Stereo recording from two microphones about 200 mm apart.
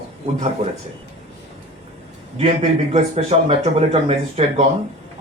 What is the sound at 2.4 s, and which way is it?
Speech, 30° right (ahead or behind).